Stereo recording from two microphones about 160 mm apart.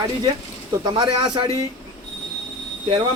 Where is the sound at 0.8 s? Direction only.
30° right (ahead or behind).